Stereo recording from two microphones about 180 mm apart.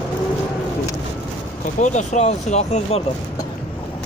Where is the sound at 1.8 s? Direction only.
40° left (ahead or behind).